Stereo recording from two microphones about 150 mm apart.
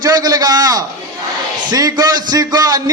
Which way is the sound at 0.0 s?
25° right (ahead or behind).